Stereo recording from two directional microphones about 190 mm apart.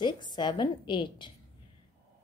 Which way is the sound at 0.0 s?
25° left (ahead or behind).